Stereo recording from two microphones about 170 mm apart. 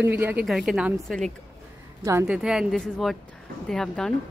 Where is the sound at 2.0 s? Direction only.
15° right (ahead or behind).